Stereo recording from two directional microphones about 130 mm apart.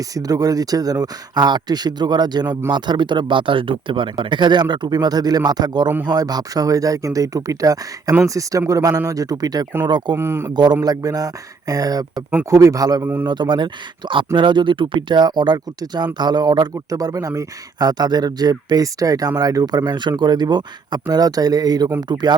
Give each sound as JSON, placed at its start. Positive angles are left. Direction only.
{"t": 0.1, "sound": "speech", "side_deg": -30}
{"t": 10.2, "sound": "a man's voice", "side_deg": -20}
{"t": 10.5, "sound": "speech", "side_deg": -35}